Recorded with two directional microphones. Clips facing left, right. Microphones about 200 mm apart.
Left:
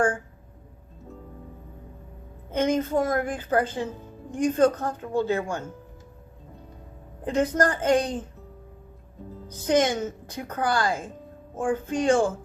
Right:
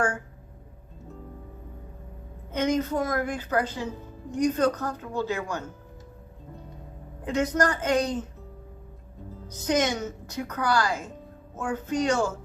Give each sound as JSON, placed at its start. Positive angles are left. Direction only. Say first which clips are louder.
{"t": 2.5, "sound": "a woman's voice", "louder": "left 2 dB", "side_deg": 30}
{"t": 7.3, "sound": "a woman's voice", "louder": "left 2 dB", "side_deg": 30}
{"t": 9.5, "sound": "a woman's voice", "louder": "left 3 dB", "side_deg": 30}